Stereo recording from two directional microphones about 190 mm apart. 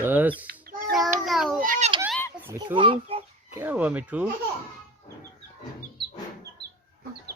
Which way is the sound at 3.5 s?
10° right (ahead or behind).